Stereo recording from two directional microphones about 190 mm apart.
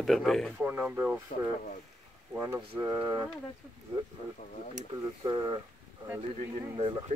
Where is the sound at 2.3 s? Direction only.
15° right (ahead or behind).